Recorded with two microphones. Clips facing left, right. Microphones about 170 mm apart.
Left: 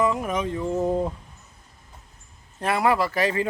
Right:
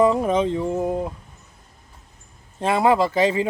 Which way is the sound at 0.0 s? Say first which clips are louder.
Right 6 dB; 30° right (ahead or behind).